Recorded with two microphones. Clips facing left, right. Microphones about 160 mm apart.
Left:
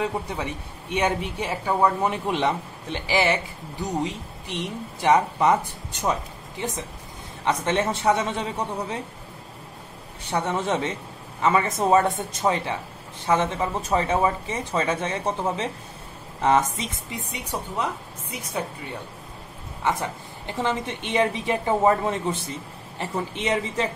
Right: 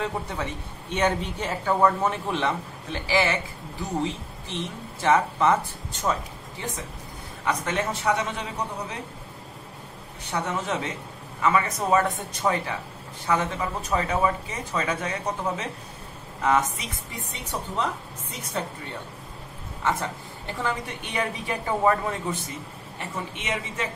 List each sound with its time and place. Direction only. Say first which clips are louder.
0.0 s a woman's voice: left 2 dB; 15° left (ahead or behind)
7.4 s a woman's voice: left 3 dB; 25° left (ahead or behind)
10.3 s a woman's voice: left 3 dB; 30° left (ahead or behind)
17.3 s a woman's voice: even; 10° left (ahead or behind)
19.8 s a woman's voice: left 1 dB; 15° left (ahead or behind); by 23.9 s 35° left (ahead or behind)